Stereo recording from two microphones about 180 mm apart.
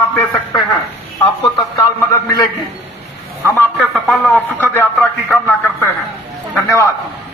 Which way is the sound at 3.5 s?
10° left (ahead or behind).